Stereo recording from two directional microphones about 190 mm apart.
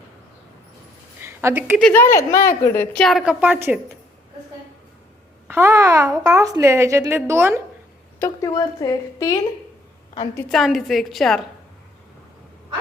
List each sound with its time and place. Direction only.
1.2 s a woman's voice: 15° right (ahead or behind)
1.8 s a woman's voice: 10° left (ahead or behind)
3.0 s a woman's voice: centre (ahead or behind)
5.5 s a child's voice: 15° right (ahead or behind)
8.2 s a woman's voice: 20° left (ahead or behind)
10.5 s a woman's voice: centre (ahead or behind)